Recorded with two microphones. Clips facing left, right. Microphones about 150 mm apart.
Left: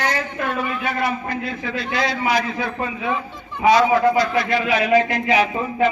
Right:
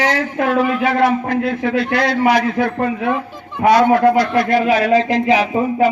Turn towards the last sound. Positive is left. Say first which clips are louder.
# right 4 dB
turn(degrees=-35)  # may be behind; listen again after turning